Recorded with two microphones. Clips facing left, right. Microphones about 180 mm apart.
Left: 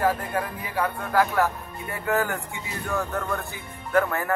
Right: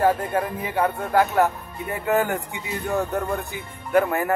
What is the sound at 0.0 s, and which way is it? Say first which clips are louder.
Speech: right 4 dB; 25° right (ahead or behind).